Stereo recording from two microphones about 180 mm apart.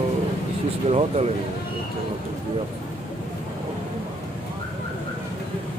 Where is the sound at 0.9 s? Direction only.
35° right (ahead or behind).